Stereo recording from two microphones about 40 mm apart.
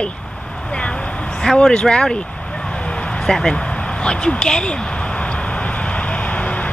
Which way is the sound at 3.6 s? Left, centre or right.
Left.